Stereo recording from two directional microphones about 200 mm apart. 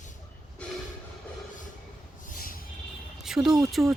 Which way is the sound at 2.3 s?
45° left (ahead or behind).